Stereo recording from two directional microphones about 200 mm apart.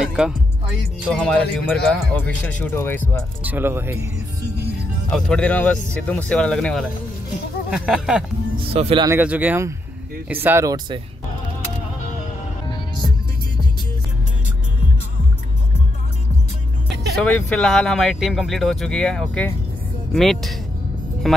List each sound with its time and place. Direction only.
0.0 s music: 5° right (ahead or behind)
1.1 s speech: 5° left (ahead or behind)
3.4 s speech: 10° right (ahead or behind)
5.1 s speech: 5° left (ahead or behind)
8.5 s speech: 30° right (ahead or behind)
9.0 s speech: 10° right (ahead or behind)
12.6 s music: 20° left (ahead or behind)
17.2 s speech: 5° left (ahead or behind)